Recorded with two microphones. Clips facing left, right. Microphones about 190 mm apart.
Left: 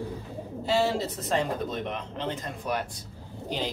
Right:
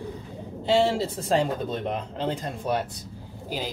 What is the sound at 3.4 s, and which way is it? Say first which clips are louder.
Speech: left 1 dB; 5° right (ahead or behind).